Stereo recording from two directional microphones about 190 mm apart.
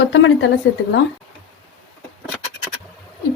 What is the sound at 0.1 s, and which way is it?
Speech, 75° left (ahead or behind).